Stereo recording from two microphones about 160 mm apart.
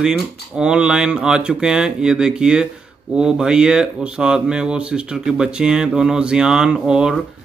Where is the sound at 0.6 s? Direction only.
5° right (ahead or behind).